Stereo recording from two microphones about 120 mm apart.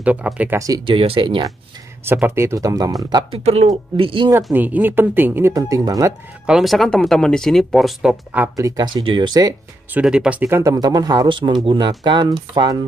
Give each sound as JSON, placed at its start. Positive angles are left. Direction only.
{"t": 0.0, "sound": "a woman's voice", "side_deg": -10}
{"t": 0.6, "sound": "speech", "side_deg": -30}
{"t": 0.8, "sound": "speech", "side_deg": -50}
{"t": 2.0, "sound": "speech", "side_deg": -15}
{"t": 3.4, "sound": "speech", "side_deg": -60}
{"t": 3.9, "sound": "speech", "side_deg": -45}
{"t": 4.3, "sound": "a woman's voice", "side_deg": -25}
{"t": 5.5, "sound": "speech", "side_deg": -30}
{"t": 6.4, "sound": "speech", "side_deg": -5}
{"t": 8.5, "sound": "speech", "side_deg": -30}
{"t": 9.9, "sound": "a woman's voice", "side_deg": -5}
{"t": 10.4, "sound": "speech", "side_deg": -25}